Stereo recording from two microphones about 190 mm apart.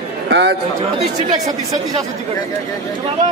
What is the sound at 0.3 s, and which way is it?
Speech, 70° right (ahead or behind).